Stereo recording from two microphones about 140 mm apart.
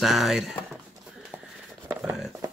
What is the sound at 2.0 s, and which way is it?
Speech, centre (ahead or behind).